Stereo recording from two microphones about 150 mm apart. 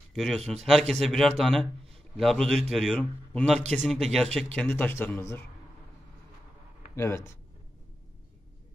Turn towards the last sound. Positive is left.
turn(degrees=20)  # may be behind; listen again after turning